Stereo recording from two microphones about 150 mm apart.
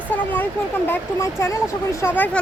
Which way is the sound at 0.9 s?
15° left (ahead or behind).